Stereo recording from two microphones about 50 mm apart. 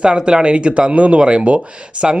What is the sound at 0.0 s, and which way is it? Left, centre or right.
Speech, centre.